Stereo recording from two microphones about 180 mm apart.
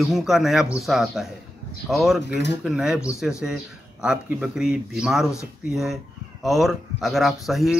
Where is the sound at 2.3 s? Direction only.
70° left (ahead or behind).